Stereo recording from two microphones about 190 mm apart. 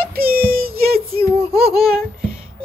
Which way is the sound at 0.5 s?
50° right (ahead or behind).